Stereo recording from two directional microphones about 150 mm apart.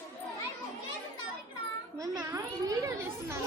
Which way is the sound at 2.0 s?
25° right (ahead or behind).